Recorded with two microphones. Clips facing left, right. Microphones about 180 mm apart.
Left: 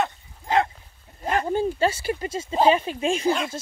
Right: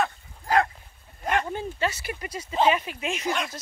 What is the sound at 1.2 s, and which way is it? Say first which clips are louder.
Speech: left 4 dB; 35° left (ahead or behind).